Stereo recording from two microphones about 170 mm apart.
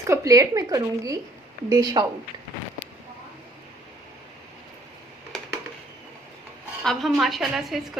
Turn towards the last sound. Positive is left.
turn(degrees=0)  # may be behind; listen again after turning